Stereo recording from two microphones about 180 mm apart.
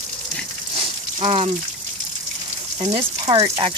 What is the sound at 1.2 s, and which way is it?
Speech, 30° right (ahead or behind).